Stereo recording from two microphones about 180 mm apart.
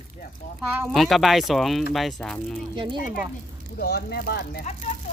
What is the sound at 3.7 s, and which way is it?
Speech, 65° left (ahead or behind).